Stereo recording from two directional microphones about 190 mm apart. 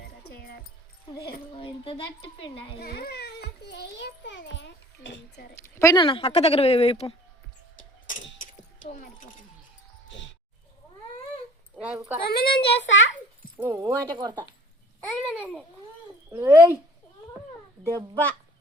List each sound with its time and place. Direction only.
0.3 s music: 55° left (ahead or behind)
1.5 s speech: 30° left (ahead or behind)
2.8 s a child's voice: 55° left (ahead or behind)
5.6 s speech: 15° left (ahead or behind)
7.8 s clock: 45° left (ahead or behind)
8.4 s a sound: 45° left (ahead or behind)
11.8 s speech: 10° right (ahead or behind)
12.2 s speech: 55° left (ahead or behind)
12.5 s speech: 25° left (ahead or behind)
12.7 s a child's voice: 70° left (ahead or behind)
13.6 s speech: 15° right (ahead or behind)
15.3 s babbling: 5° right (ahead or behind)
16.3 s speech: 10° right (ahead or behind)
17.8 s speech: 15° right (ahead or behind)